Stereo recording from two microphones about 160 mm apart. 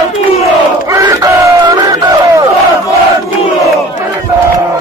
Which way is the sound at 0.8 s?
20° right (ahead or behind).